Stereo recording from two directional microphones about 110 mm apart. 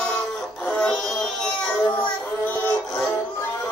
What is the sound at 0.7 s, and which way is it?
Music, 5° left (ahead or behind).